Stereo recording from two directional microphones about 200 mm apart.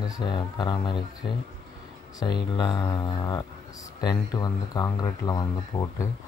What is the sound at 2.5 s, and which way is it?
Speech, 20° left (ahead or behind).